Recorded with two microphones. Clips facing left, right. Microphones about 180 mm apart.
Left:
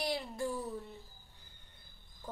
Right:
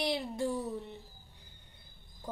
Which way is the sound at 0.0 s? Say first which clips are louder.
Right 3 dB; 20° right (ahead or behind).